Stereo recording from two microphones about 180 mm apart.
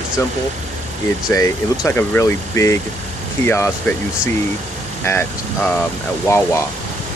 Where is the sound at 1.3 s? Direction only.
15° left (ahead or behind).